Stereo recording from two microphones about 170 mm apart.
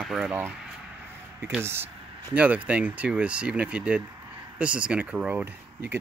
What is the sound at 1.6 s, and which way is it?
Speech, 15° right (ahead or behind).